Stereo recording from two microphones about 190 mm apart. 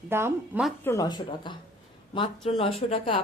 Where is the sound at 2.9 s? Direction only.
30° left (ahead or behind).